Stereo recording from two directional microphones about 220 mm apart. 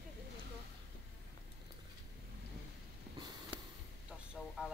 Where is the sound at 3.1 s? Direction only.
20° right (ahead or behind).